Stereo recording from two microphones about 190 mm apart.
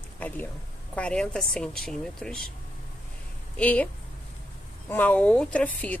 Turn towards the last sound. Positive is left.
turn(degrees=10)  # may be behind; listen again after turning